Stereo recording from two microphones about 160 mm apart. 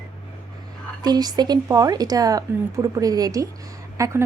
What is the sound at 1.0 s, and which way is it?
A woman's voice, 25° right (ahead or behind).